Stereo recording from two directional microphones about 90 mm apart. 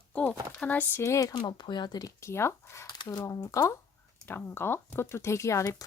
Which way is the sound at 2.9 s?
50° left (ahead or behind).